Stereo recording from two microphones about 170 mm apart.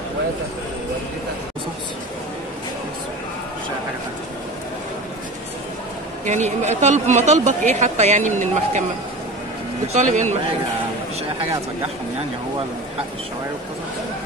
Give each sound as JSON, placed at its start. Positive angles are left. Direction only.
{"t": 6.2, "sound": "speech", "side_deg": -45}
{"t": 9.9, "sound": "speech", "side_deg": -45}